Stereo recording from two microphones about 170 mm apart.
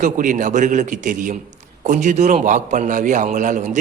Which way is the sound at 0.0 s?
50° right (ahead or behind).